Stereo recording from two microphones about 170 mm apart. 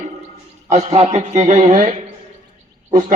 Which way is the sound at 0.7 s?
40° right (ahead or behind).